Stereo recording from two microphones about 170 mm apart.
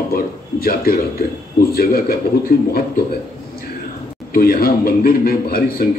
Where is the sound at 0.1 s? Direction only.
60° left (ahead or behind).